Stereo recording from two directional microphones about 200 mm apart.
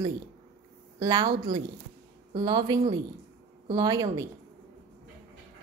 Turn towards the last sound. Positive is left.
turn(degrees=-15)  # may be behind; listen again after turning